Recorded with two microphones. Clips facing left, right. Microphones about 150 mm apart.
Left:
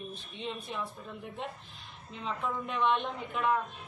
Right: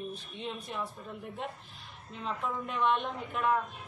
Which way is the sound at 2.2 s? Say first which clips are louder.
Even; 5° right (ahead or behind).